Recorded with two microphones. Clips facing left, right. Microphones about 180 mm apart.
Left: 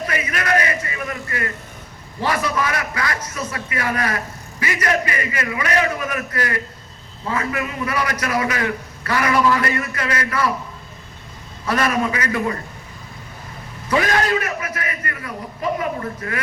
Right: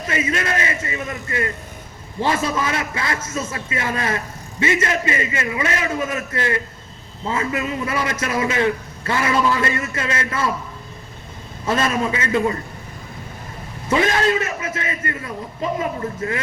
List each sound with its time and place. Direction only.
0.1 s a man's voice: 25° right (ahead or behind)
11.6 s a man's voice: 25° right (ahead or behind)
13.8 s a man's voice: 25° right (ahead or behind)